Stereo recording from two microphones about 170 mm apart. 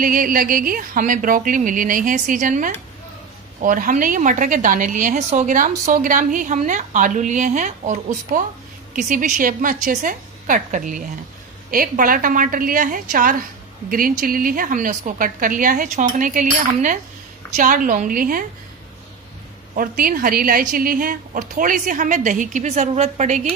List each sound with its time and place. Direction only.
0.0 s a woman's voice: 55° right (ahead or behind)
19.7 s a woman's voice: 55° right (ahead or behind)